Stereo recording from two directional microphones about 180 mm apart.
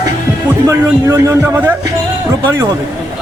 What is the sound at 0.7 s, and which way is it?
Speech, 15° right (ahead or behind).